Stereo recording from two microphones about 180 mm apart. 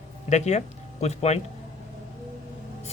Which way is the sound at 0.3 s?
40° left (ahead or behind).